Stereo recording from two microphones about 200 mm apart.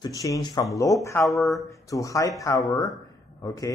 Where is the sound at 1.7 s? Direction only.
15° left (ahead or behind).